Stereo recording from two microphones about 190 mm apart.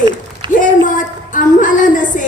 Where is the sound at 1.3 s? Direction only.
45° left (ahead or behind).